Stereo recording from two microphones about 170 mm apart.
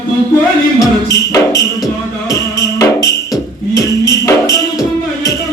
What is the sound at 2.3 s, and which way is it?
Music, 20° left (ahead or behind).